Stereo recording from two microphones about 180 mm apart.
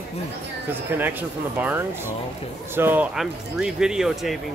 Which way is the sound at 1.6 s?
10° right (ahead or behind).